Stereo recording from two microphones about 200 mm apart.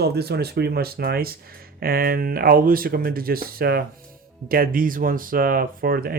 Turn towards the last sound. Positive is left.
turn(degrees=-45)  # may be behind; listen again after turning